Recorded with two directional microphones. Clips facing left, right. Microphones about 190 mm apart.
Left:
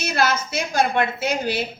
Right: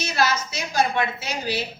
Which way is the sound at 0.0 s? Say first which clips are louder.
Left 2 dB; 55° left (ahead or behind).